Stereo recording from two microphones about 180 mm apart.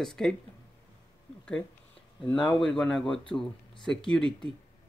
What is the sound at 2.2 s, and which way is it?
Speech, 25° left (ahead or behind).